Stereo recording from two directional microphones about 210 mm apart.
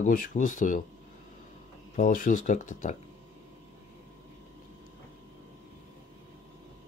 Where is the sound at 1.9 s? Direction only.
40° left (ahead or behind).